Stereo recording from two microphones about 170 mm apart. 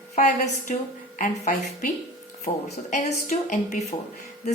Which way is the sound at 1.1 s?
45° left (ahead or behind).